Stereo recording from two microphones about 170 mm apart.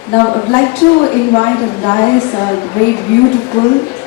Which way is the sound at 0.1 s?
25° left (ahead or behind).